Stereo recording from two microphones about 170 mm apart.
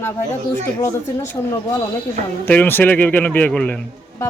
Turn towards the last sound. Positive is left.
turn(degrees=5)  # may be behind; listen again after turning